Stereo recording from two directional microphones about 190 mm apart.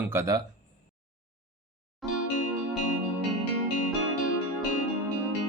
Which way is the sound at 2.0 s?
Centre (ahead or behind).